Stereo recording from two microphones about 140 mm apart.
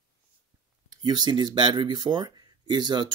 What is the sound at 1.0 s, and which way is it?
Speech, 30° right (ahead or behind).